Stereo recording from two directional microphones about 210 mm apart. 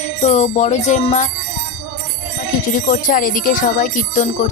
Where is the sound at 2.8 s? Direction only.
40° left (ahead or behind).